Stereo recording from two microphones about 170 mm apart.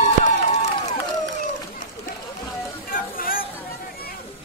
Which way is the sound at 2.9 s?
55° left (ahead or behind).